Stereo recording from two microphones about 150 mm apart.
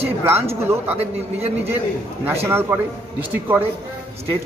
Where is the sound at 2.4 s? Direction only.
15° right (ahead or behind).